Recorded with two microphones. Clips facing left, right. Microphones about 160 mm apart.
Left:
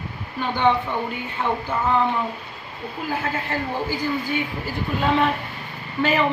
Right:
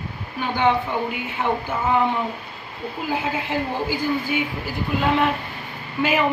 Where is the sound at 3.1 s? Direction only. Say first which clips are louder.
Right 1 dB; 10° right (ahead or behind).